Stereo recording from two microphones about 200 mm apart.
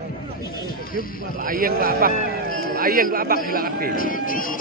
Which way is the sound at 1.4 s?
45° right (ahead or behind).